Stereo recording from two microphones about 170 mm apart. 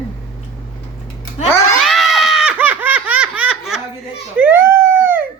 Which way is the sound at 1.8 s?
Centre (ahead or behind).